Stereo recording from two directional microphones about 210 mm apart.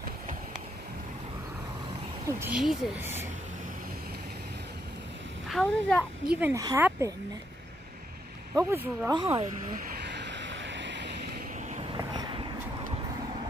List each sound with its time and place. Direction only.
2.2 s speech: 10° right (ahead or behind)
5.5 s a child's voice: centre (ahead or behind)
6.3 s speech: 10° right (ahead or behind)
8.6 s speech: 10° right (ahead or behind)
9.1 s speech: 25° right (ahead or behind)
9.7 s vehicle: 55° right (ahead or behind)
12.0 s a sound: 20° right (ahead or behind)